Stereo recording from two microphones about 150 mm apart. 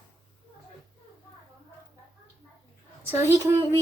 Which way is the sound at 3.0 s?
15° right (ahead or behind).